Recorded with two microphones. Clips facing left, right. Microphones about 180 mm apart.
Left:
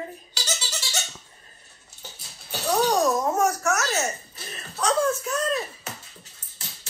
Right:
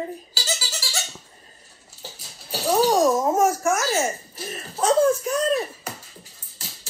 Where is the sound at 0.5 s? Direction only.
5° right (ahead or behind).